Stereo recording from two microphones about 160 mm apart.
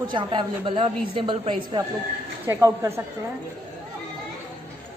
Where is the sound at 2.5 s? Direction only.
20° right (ahead or behind).